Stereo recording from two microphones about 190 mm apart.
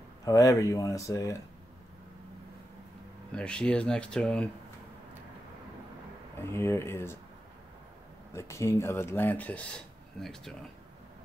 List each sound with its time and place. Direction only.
0.2 s speech: 15° left (ahead or behind)
3.3 s speech: 5° left (ahead or behind)
6.4 s speech: 15° left (ahead or behind)
8.3 s speech: 15° left (ahead or behind)